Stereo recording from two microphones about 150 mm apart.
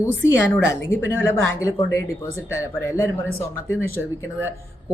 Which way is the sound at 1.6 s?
20° left (ahead or behind).